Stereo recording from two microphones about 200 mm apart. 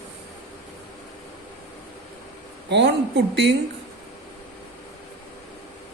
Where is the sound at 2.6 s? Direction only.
60° right (ahead or behind).